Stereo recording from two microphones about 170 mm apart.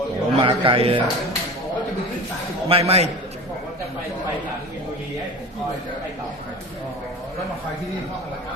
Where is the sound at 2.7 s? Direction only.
35° right (ahead or behind).